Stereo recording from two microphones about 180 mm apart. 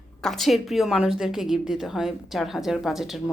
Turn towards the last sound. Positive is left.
turn(degrees=0)  # may be behind; listen again after turning